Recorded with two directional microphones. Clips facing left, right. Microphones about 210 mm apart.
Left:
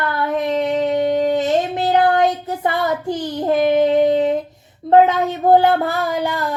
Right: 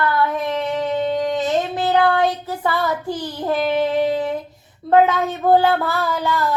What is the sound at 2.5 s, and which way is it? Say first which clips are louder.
Child singing: left 2 dB; 20° left (ahead or behind).